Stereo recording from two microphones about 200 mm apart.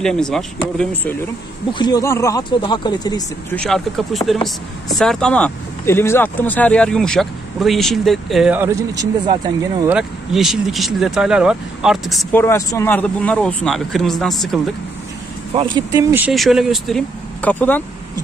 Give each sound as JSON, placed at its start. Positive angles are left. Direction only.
{"t": 0.0, "sound": "speech", "side_deg": 5}
{"t": 1.7, "sound": "speech", "side_deg": 20}
{"t": 3.5, "sound": "speech", "side_deg": 5}
{"t": 9.8, "sound": "speech", "side_deg": -5}
{"t": 12.4, "sound": "speech", "side_deg": 10}
{"t": 15.5, "sound": "speech", "side_deg": -25}